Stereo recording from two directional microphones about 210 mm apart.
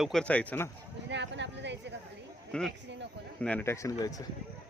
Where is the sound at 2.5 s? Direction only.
Centre (ahead or behind).